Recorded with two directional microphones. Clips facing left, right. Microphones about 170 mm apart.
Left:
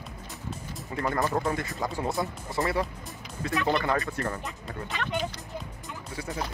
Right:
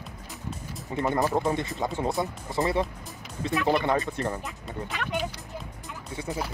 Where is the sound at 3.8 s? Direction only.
20° right (ahead or behind).